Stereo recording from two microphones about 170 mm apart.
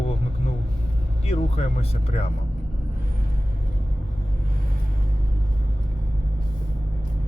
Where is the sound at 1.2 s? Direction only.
40° left (ahead or behind).